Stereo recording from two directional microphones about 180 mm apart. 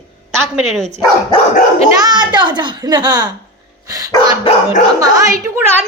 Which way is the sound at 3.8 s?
20° right (ahead or behind).